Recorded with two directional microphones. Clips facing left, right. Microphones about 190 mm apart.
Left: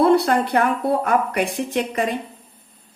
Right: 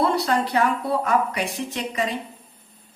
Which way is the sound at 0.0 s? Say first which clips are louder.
Left 6 dB; 55° left (ahead or behind).